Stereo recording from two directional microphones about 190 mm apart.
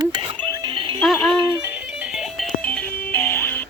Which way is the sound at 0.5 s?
25° right (ahead or behind).